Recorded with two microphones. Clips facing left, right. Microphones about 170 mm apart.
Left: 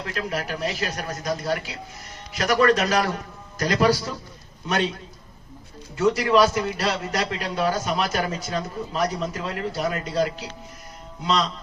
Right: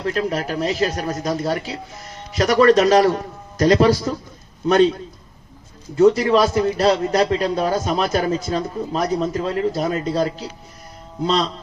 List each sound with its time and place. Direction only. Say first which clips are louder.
0.0 s a man's voice: right 7 dB; 40° right (ahead or behind)
6.0 s a man's voice: right 5 dB; 35° right (ahead or behind)